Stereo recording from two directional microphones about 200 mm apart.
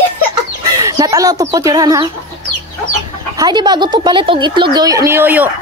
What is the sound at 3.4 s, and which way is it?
A woman's voice, 20° right (ahead or behind).